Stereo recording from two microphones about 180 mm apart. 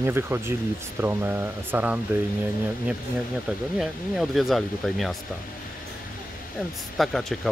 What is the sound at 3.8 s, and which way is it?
Speech, centre (ahead or behind).